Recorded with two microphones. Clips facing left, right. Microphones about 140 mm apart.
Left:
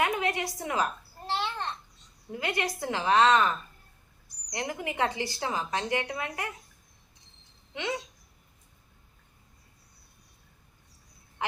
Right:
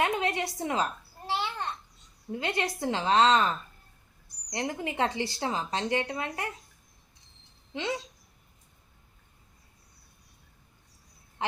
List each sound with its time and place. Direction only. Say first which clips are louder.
0.0 s a sound: even; 25° right (ahead or behind)
1.3 s babbling: even; 5° right (ahead or behind)
2.3 s a woman's voice: right 1 dB; 25° right (ahead or behind)
4.5 s a woman's voice: right 1 dB; 25° right (ahead or behind)
7.7 s a woman's voice: right 1 dB; 30° right (ahead or behind)